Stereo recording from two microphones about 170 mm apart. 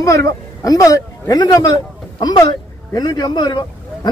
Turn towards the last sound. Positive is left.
turn(degrees=25)  # may be behind; listen again after turning